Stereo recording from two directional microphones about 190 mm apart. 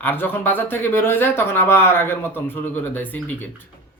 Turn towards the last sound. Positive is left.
turn(degrees=10)  # may be behind; listen again after turning